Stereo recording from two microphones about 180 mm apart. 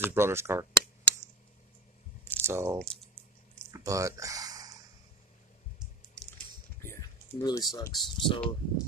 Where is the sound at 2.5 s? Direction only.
15° right (ahead or behind).